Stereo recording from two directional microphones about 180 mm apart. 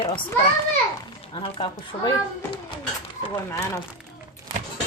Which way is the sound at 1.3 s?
30° left (ahead or behind).